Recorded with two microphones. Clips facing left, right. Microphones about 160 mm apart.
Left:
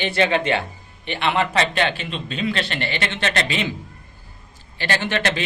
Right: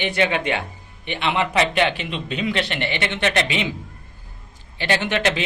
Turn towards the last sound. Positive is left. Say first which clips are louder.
# right 2 dB
turn(degrees=-15)  # may be behind; listen again after turning